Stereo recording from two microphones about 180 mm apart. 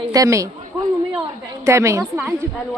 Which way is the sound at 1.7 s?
15° right (ahead or behind).